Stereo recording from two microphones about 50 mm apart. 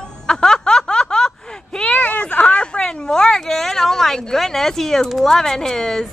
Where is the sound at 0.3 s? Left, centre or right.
Centre.